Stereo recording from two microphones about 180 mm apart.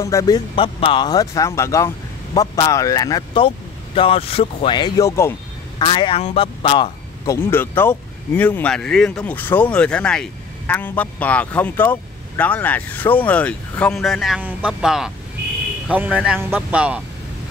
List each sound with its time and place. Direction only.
0.0 s speech: 20° left (ahead or behind)
5.8 s speech: 25° left (ahead or behind)
7.2 s speech: 15° left (ahead or behind); by 17.0 s 5° right (ahead or behind)